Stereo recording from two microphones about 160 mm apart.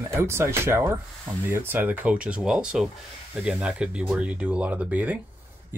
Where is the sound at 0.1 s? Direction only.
15° right (ahead or behind).